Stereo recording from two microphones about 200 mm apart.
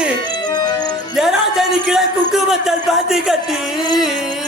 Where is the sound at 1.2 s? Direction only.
Centre (ahead or behind).